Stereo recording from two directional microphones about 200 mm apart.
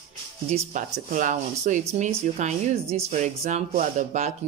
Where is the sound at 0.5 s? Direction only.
35° right (ahead or behind).